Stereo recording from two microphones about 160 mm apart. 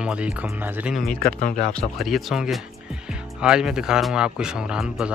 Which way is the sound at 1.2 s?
55° left (ahead or behind).